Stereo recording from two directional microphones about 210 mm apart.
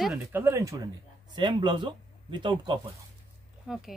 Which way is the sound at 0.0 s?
5° right (ahead or behind).